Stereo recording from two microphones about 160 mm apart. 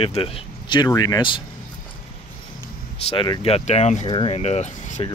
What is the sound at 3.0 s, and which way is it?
Speech, 30° left (ahead or behind).